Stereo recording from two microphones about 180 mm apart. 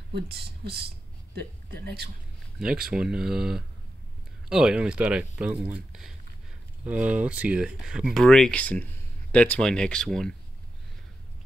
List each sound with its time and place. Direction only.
0.1 s speech: 60° right (ahead or behind)
2.6 s speech: 5° right (ahead or behind)